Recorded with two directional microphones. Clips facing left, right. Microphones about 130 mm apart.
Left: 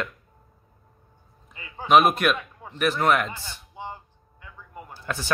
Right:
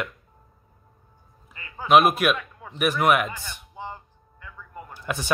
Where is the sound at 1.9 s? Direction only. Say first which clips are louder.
Even; centre (ahead or behind).